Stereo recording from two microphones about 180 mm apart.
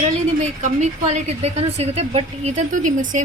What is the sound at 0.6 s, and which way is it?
A woman's voice, 40° right (ahead or behind).